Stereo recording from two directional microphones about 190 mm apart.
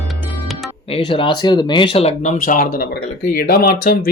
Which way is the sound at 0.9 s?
25° left (ahead or behind).